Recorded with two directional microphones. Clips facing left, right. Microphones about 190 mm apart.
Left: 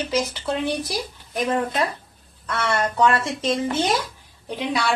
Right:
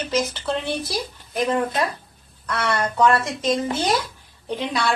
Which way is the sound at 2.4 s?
25° left (ahead or behind).